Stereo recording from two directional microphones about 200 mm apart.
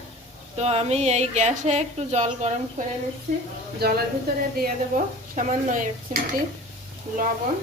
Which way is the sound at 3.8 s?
50° right (ahead or behind).